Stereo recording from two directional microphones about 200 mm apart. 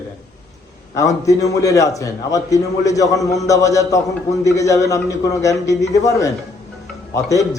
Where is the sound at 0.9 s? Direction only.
15° left (ahead or behind).